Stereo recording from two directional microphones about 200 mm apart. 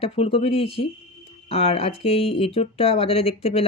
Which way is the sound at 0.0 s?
30° left (ahead or behind).